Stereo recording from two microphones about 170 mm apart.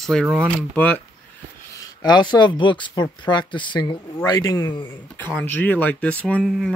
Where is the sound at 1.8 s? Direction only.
25° left (ahead or behind).